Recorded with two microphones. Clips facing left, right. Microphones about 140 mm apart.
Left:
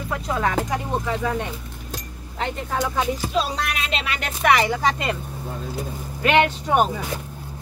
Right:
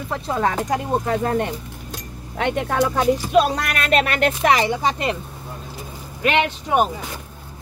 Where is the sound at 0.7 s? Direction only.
50° right (ahead or behind).